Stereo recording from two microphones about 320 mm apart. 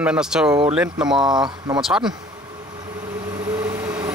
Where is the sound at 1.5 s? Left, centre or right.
Centre.